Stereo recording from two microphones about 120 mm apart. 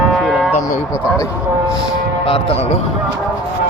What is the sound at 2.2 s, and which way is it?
Speech, 50° left (ahead or behind).